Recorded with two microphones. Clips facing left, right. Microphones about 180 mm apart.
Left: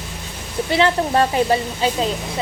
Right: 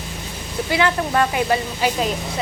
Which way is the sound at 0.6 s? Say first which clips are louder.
Left 2 dB; 25° left (ahead or behind).